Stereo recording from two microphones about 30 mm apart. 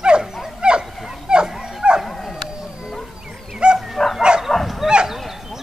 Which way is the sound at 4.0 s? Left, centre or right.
Centre.